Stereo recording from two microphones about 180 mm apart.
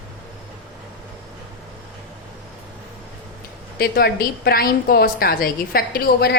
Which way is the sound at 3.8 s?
60° left (ahead or behind).